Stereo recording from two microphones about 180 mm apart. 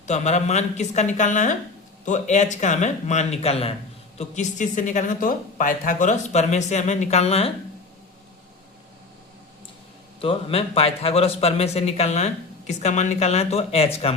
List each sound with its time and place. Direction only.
0.0 s a man's voice: 40° left (ahead or behind)
10.2 s a man's voice: 30° left (ahead or behind)